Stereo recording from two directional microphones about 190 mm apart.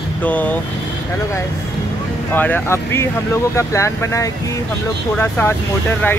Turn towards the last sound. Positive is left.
turn(degrees=10)  # may be behind; listen again after turning